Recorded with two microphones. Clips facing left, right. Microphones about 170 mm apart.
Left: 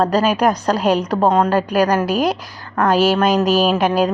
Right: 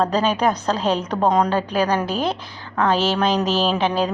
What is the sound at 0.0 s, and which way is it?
A woman's voice, 10° left (ahead or behind).